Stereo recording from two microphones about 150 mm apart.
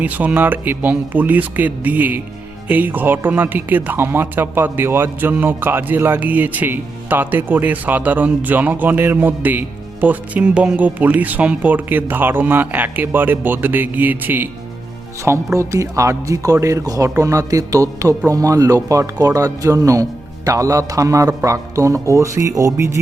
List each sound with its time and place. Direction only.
0.0 s speech: 10° right (ahead or behind)
15.5 s a man's voice: 20° right (ahead or behind)